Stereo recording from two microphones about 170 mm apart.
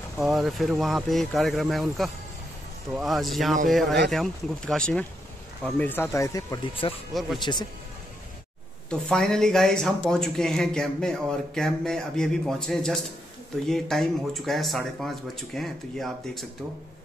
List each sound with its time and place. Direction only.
0.2 s speech: centre (ahead or behind); by 6.6 s 20° left (ahead or behind)
6.8 s speech: 35° left (ahead or behind)
7.2 s speech: centre (ahead or behind)
8.9 s speech: 5° left (ahead or behind)